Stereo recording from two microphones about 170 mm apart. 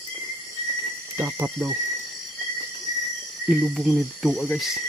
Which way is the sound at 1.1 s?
15° right (ahead or behind).